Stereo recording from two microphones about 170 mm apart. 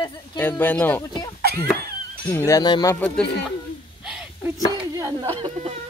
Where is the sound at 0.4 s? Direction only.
10° left (ahead or behind).